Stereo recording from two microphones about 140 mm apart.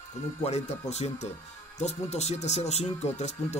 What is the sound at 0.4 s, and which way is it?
Speech, 50° left (ahead or behind).